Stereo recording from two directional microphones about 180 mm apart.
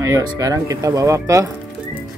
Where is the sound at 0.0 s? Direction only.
15° right (ahead or behind).